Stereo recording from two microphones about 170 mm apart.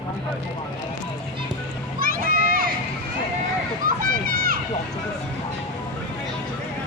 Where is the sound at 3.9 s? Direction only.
55° right (ahead or behind).